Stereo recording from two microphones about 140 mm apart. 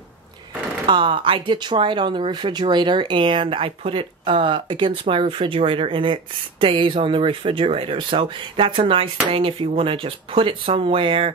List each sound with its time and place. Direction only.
0.8 s speech: 35° right (ahead or behind)